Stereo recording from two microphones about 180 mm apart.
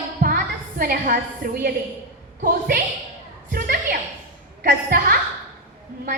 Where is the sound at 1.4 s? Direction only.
55° right (ahead or behind).